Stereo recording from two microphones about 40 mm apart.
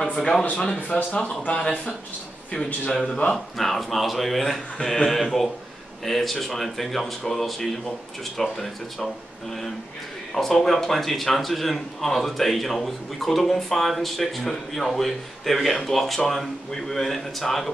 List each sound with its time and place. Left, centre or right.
0.0 s speech: left
2.9 s speech: centre
3.5 s a man's voice: centre
10.3 s a man's voice: centre